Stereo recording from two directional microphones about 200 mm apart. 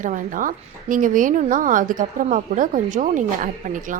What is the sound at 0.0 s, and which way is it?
A woman's voice, 40° right (ahead or behind).